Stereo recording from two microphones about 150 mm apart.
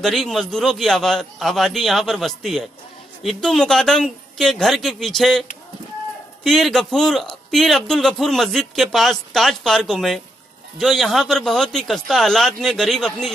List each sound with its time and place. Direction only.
0.0 s a man's voice: centre (ahead or behind)